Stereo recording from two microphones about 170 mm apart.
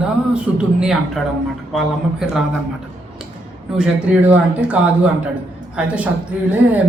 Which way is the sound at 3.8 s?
5° right (ahead or behind).